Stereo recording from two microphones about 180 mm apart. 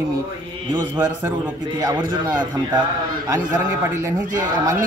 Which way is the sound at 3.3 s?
15° right (ahead or behind).